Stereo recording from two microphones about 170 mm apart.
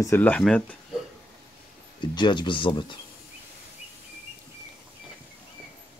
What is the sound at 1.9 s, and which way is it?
Speech, 25° left (ahead or behind).